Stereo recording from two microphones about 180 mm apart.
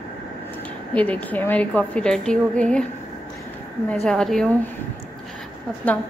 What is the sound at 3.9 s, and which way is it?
Speech, 5° left (ahead or behind).